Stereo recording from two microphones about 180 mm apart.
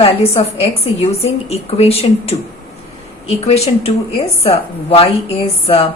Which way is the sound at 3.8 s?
35° left (ahead or behind).